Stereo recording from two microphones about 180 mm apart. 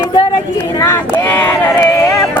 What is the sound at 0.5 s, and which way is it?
Speech, 15° left (ahead or behind).